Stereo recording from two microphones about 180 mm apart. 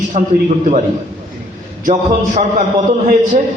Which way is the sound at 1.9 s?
45° right (ahead or behind).